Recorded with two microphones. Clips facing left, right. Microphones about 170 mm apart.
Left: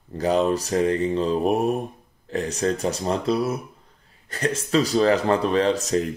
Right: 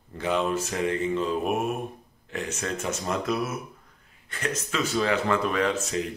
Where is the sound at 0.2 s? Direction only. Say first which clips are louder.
Left 5 dB; 40° left (ahead or behind).